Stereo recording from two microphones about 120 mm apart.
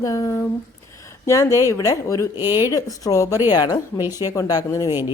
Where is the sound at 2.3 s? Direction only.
20° right (ahead or behind).